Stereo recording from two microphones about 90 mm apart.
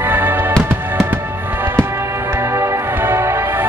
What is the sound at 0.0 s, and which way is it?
Fireworks, 20° right (ahead or behind).